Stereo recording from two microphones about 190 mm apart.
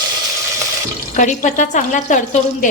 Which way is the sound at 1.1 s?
40° left (ahead or behind).